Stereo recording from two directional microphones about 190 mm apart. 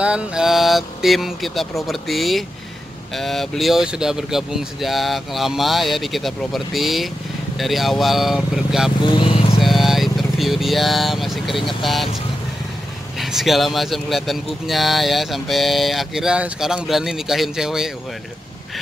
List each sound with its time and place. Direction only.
0.0 s speech: 5° right (ahead or behind)
9.0 s vehicle: 25° left (ahead or behind)
9.6 s speech: centre (ahead or behind)
13.2 s speech: centre (ahead or behind)